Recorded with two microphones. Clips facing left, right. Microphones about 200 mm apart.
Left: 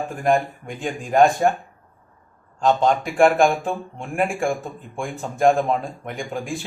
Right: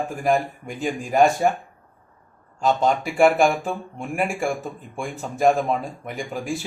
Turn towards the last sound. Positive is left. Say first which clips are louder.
# even
turn(degrees=-5)  # may be behind; listen again after turning